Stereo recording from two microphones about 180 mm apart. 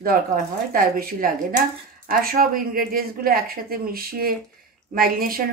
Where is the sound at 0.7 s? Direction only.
55° right (ahead or behind).